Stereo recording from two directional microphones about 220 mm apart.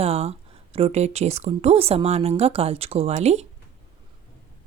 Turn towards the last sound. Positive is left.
turn(degrees=-30)  # may be behind; listen again after turning